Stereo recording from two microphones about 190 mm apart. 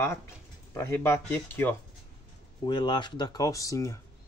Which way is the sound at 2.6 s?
25° left (ahead or behind).